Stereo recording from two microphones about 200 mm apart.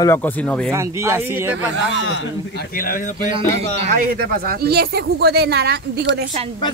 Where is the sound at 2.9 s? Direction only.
40° left (ahead or behind).